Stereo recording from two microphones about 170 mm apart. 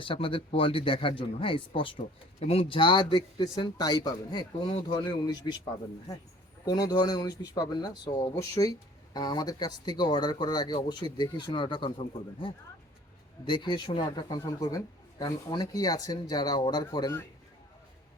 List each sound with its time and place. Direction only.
0.0 s speech: 30° left (ahead or behind)
6.7 s speech: 20° left (ahead or behind)